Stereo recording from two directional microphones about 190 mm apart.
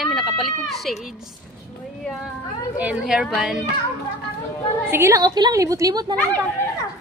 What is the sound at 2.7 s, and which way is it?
Speech, 5° right (ahead or behind).